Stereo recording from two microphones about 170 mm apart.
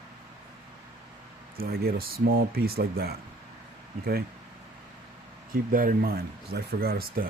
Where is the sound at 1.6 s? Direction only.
65° right (ahead or behind).